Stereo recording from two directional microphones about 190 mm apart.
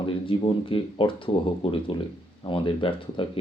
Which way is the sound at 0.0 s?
30° left (ahead or behind).